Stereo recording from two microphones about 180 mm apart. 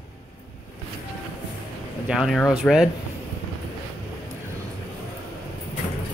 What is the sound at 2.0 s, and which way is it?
Speech, centre (ahead or behind).